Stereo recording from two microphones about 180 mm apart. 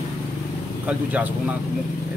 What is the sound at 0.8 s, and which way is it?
Speech, 10° right (ahead or behind).